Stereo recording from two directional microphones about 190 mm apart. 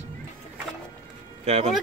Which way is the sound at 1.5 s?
35° right (ahead or behind).